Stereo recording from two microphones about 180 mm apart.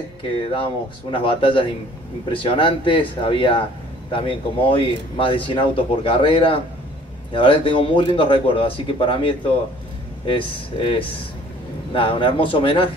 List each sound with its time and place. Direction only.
0.2 s speech: 30° left (ahead or behind)